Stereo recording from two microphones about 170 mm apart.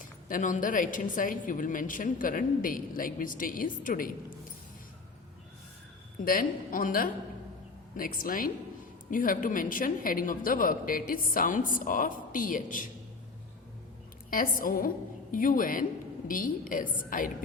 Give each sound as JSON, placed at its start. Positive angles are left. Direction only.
{"t": 0.0, "sound": "a woman's voice", "side_deg": 50}
{"t": 6.1, "sound": "a woman's voice", "side_deg": 55}
{"t": 14.3, "sound": "a woman's voice", "side_deg": 55}